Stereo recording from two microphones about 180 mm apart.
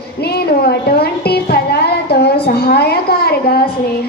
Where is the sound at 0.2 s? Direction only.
60° left (ahead or behind).